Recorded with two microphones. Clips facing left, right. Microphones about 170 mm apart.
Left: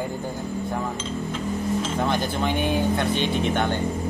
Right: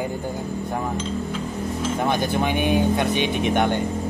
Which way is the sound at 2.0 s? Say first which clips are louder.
Right 5 dB; 15° right (ahead or behind).